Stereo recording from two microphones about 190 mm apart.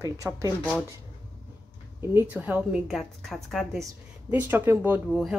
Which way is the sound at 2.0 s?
10° right (ahead or behind).